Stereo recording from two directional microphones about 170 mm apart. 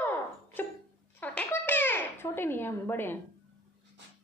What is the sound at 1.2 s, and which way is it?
Babbling, 10° left (ahead or behind).